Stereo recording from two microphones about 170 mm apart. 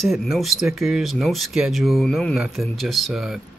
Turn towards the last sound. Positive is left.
turn(degrees=0)  # may be behind; listen again after turning